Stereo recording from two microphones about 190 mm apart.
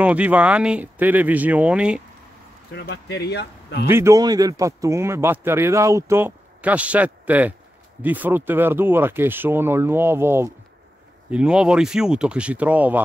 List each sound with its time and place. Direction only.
0.0 s speech: 5° right (ahead or behind)
2.7 s speech: 60° left (ahead or behind)
3.8 s speech: 15° right (ahead or behind)